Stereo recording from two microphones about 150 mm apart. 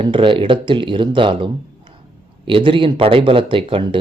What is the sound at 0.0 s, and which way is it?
A man's voice, 35° right (ahead or behind).